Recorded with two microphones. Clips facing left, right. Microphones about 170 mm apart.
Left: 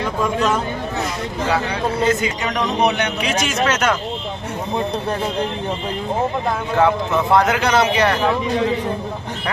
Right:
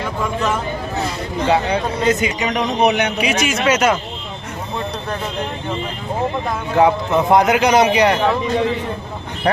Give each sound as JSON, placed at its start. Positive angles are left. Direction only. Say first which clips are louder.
{"t": 1.4, "sound": "a man's voice", "louder": "right 4 dB", "side_deg": -25}
{"t": 6.7, "sound": "a man's voice", "louder": "right 3 dB", "side_deg": -15}